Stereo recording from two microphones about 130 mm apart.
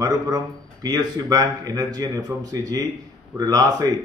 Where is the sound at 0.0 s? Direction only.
30° right (ahead or behind).